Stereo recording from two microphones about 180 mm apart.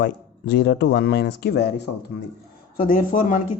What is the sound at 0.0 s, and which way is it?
Speech, 70° left (ahead or behind).